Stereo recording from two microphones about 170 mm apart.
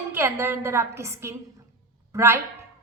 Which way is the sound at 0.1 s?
15° right (ahead or behind).